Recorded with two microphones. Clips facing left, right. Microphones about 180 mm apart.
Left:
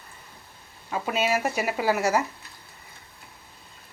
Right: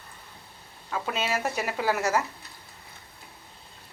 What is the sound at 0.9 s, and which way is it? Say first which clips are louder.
A woman's voice: left 4 dB; 10° left (ahead or behind).